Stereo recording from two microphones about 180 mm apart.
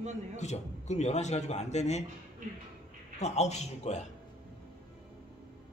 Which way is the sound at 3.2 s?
40° left (ahead or behind).